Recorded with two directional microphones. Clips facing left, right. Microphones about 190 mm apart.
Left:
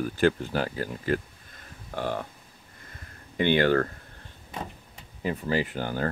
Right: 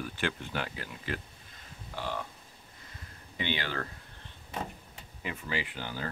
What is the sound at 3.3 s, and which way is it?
Speech, 50° left (ahead or behind).